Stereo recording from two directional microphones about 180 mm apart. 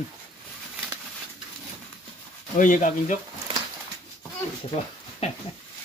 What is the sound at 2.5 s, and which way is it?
Speech, 45° left (ahead or behind).